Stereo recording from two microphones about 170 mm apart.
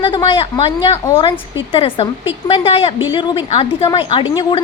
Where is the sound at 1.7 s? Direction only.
30° left (ahead or behind).